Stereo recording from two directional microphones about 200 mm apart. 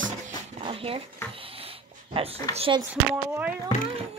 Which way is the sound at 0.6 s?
25° right (ahead or behind).